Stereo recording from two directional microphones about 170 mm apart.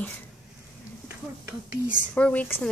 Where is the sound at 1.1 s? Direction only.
10° right (ahead or behind).